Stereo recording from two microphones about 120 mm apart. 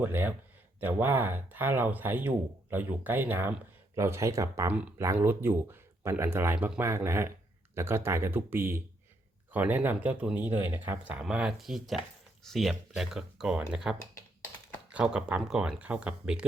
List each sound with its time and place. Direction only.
0.0 s speech: 15° right (ahead or behind)
4.7 s speech: 10° right (ahead or behind)